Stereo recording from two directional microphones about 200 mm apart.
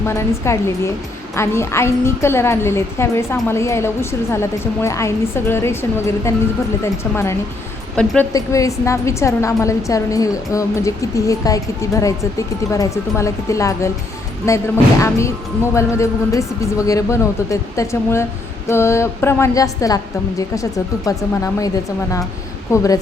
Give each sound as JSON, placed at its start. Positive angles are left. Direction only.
{"t": 0.0, "sound": "a woman's voice", "side_deg": 15}
{"t": 8.3, "sound": "a woman's voice", "side_deg": 15}
{"t": 22.7, "sound": "a woman's voice", "side_deg": 15}